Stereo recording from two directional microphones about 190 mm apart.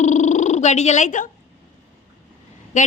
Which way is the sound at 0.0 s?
40° left (ahead or behind).